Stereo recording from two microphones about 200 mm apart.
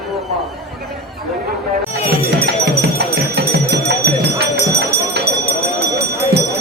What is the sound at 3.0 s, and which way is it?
Music, 50° right (ahead or behind).